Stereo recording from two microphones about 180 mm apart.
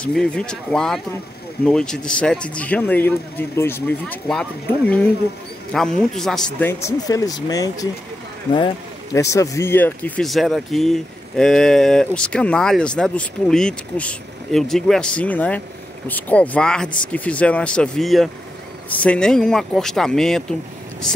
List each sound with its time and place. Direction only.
0.0 s speech: 5° left (ahead or behind)
6.7 s speech: 20° left (ahead or behind); by 20.5 s 5° left (ahead or behind)